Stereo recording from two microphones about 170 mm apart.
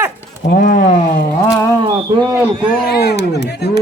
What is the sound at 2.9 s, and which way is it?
Speech, 70° left (ahead or behind).